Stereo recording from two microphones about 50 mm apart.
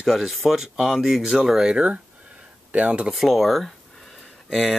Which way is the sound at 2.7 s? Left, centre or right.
Right.